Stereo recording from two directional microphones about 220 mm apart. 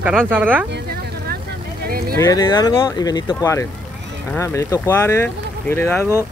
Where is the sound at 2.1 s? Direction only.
15° left (ahead or behind).